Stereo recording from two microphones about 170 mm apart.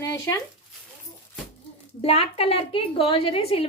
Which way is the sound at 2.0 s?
35° left (ahead or behind).